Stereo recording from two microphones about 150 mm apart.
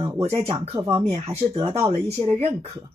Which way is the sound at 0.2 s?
40° right (ahead or behind).